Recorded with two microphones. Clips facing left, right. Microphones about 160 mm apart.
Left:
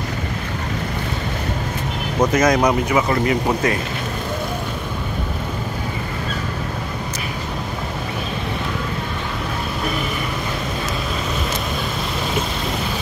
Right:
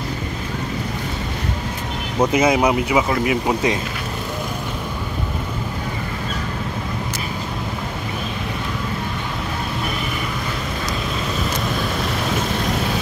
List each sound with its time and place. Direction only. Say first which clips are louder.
2.3 s speech: even; 10° right (ahead or behind)